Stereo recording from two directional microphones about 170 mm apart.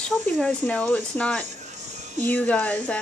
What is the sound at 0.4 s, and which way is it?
Speech, 10° left (ahead or behind).